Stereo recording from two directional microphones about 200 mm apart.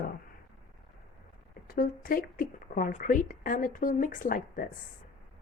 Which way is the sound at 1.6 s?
45° left (ahead or behind).